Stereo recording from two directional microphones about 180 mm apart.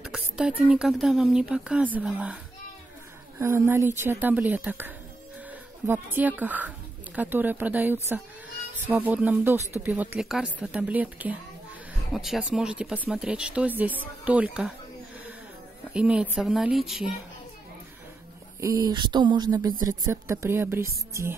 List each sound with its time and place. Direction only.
0.1 s speech: 5° right (ahead or behind)
3.3 s speech: 15° right (ahead or behind)
15.9 s speech: 5° right (ahead or behind)
18.6 s speech: 20° right (ahead or behind)